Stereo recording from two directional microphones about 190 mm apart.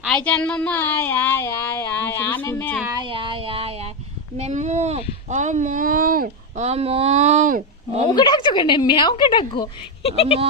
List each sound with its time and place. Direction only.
0.0 s speech: 5° left (ahead or behind)
2.8 s a sound: 20° right (ahead or behind)
4.4 s speech: 35° right (ahead or behind)
6.6 s speech: 35° right (ahead or behind)
8.1 s a woman's voice: 20° left (ahead or behind)